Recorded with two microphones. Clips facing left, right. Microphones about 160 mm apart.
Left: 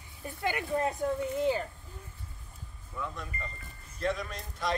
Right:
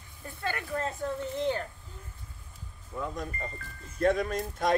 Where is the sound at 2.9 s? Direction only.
40° right (ahead or behind).